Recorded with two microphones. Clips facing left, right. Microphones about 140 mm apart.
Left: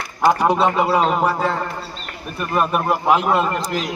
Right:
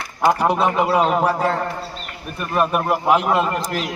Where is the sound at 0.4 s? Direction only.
10° right (ahead or behind).